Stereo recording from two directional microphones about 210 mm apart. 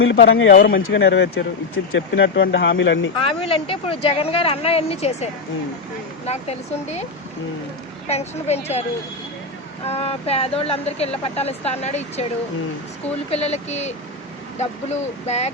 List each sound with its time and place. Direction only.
0.0 s speech: 65° left (ahead or behind)
0.5 s speech: 45° left (ahead or behind)
0.8 s speech: 60° left (ahead or behind)
1.7 s speech: 65° left (ahead or behind)
3.2 s speech: 25° left (ahead or behind)
8.0 s speech: 30° left (ahead or behind)
9.9 s speech: 30° left (ahead or behind)
13.3 s speech: 30° left (ahead or behind)